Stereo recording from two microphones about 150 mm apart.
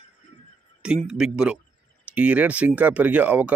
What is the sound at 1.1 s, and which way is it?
A man's voice, 5° right (ahead or behind).